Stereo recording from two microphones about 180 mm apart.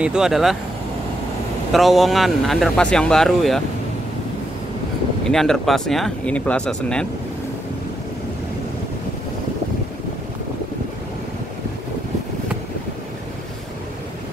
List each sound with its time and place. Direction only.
0.0 s speech: 5° right (ahead or behind)
1.7 s speech: centre (ahead or behind)
5.2 s speech: 5° left (ahead or behind)